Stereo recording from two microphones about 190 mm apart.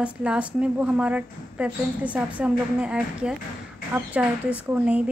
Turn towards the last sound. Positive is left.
turn(degrees=-5)  # may be behind; listen again after turning